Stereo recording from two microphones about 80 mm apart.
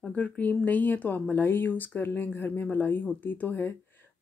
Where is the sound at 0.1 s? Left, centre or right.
Centre.